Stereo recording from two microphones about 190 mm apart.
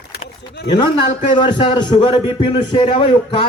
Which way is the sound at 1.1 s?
25° left (ahead or behind).